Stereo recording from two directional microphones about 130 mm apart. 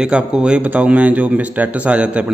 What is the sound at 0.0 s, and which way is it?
Speech, 5° right (ahead or behind).